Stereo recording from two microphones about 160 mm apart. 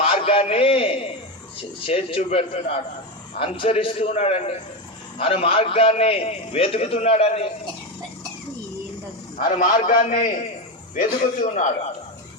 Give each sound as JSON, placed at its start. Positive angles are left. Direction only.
{"t": 0.0, "sound": "a man's voice", "side_deg": 35}
{"t": 9.6, "sound": "a man's voice", "side_deg": 55}